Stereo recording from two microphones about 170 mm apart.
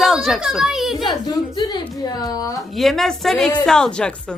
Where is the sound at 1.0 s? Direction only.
25° left (ahead or behind).